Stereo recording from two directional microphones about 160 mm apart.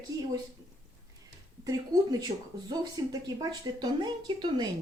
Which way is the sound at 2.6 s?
25° right (ahead or behind).